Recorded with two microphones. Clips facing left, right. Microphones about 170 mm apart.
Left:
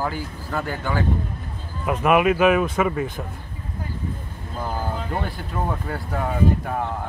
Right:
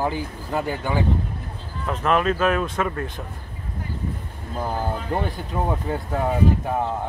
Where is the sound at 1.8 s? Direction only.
10° left (ahead or behind).